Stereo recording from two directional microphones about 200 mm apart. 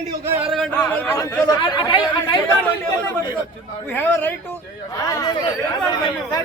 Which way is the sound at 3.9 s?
10° left (ahead or behind).